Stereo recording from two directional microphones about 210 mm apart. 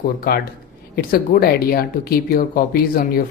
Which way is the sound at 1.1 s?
45° left (ahead or behind).